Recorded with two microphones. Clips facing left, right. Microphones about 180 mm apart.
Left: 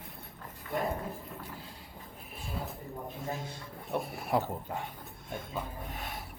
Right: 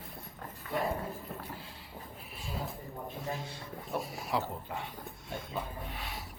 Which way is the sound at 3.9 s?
55° left (ahead or behind).